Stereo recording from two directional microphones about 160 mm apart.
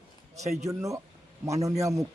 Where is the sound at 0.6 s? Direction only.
20° right (ahead or behind).